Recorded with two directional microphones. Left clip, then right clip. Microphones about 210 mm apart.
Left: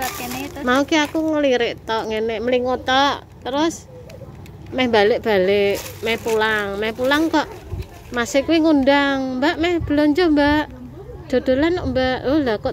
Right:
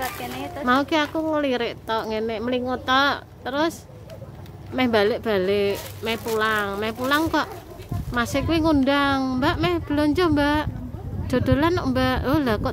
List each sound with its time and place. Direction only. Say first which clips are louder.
0.2 s a sound: left 2 dB; 15° right (ahead or behind)
0.7 s speech: left 3 dB; centre (ahead or behind)
4.7 s speech: left 4 dB; centre (ahead or behind); by 12.6 s 15° right (ahead or behind)